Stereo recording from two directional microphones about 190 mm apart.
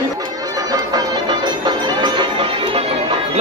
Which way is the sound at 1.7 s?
25° right (ahead or behind).